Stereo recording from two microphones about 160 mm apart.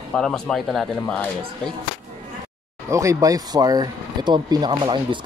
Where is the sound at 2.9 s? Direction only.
20° right (ahead or behind).